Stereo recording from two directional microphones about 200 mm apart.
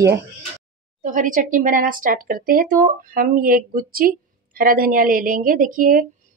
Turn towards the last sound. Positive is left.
turn(degrees=-45)  # may be behind; listen again after turning